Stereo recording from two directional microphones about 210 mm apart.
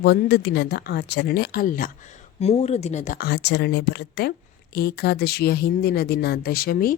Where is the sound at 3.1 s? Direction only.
50° left (ahead or behind).